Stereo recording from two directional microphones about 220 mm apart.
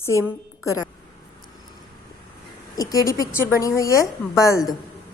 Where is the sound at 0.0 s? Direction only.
15° left (ahead or behind).